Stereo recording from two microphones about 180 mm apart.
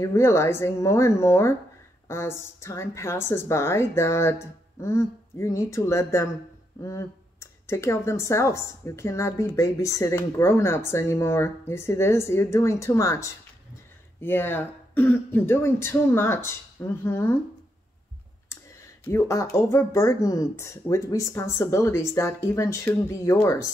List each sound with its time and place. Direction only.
0.0 s speech: 15° left (ahead or behind)
19.0 s speech: 15° left (ahead or behind)